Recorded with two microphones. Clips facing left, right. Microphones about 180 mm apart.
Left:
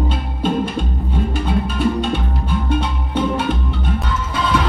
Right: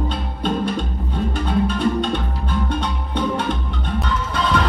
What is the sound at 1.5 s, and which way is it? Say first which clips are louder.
Music: right 1 dB; 5° left (ahead or behind).